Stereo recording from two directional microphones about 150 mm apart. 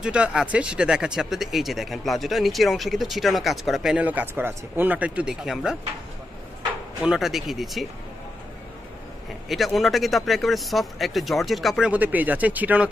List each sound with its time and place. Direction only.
0.0 s speech: 5° right (ahead or behind)
7.0 s speech: 5° right (ahead or behind)
9.5 s speech: centre (ahead or behind)